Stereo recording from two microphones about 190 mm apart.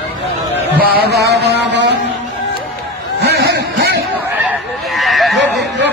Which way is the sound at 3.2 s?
60° right (ahead or behind).